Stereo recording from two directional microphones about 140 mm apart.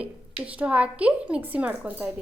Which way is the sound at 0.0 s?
10° right (ahead or behind).